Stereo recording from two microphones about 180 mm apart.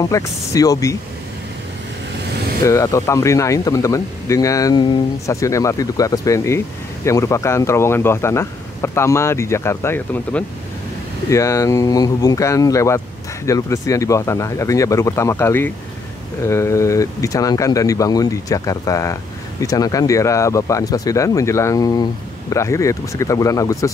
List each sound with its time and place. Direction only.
0.0 s speech: 20° left (ahead or behind)
2.6 s speech: 15° left (ahead or behind)